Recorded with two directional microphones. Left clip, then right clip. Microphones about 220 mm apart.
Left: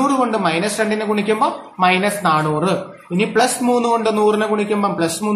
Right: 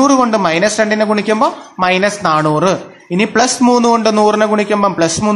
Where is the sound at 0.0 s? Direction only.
30° right (ahead or behind).